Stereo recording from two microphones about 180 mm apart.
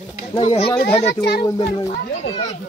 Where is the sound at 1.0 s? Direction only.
65° left (ahead or behind).